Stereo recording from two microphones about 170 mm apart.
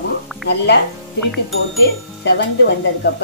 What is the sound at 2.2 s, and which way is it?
Speech, 85° left.